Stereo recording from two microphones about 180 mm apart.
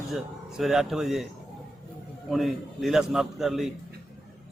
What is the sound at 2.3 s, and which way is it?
A man's voice, centre (ahead or behind).